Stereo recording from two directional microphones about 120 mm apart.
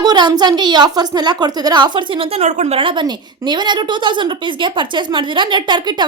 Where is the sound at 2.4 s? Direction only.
70° right (ahead or behind).